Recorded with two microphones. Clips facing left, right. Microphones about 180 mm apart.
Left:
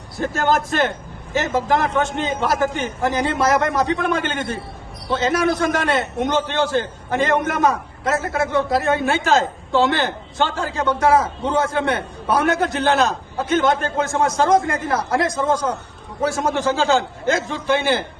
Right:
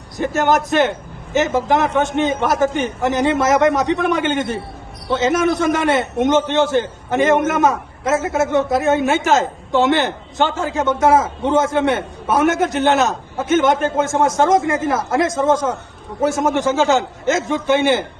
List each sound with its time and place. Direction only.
0.2 s a man's voice: 20° right (ahead or behind)